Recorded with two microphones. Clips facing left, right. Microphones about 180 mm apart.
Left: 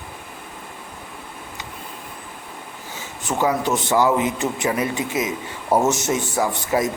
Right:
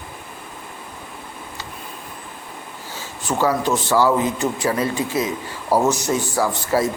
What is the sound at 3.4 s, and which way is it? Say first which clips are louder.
Speech: right 1 dB; 20° left (ahead or behind).